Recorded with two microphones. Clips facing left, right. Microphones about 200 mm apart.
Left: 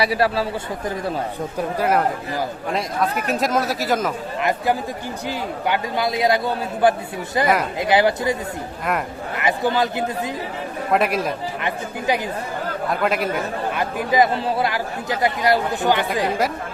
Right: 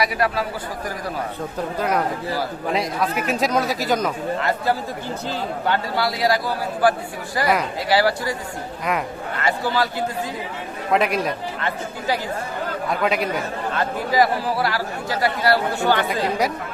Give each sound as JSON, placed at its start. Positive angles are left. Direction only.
{"t": 0.0, "sound": "speech", "side_deg": 30}
{"t": 1.5, "sound": "speech", "side_deg": 5}
{"t": 4.4, "sound": "speech", "side_deg": 15}
{"t": 7.4, "sound": "speech", "side_deg": 0}
{"t": 7.8, "sound": "speech", "side_deg": 20}
{"t": 9.4, "sound": "speech", "side_deg": 15}
{"t": 10.9, "sound": "speech", "side_deg": 0}
{"t": 11.6, "sound": "speech", "side_deg": 20}
{"t": 12.9, "sound": "speech", "side_deg": 0}
{"t": 13.7, "sound": "speech", "side_deg": 20}